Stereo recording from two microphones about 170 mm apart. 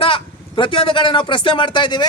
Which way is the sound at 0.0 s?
30° left (ahead or behind).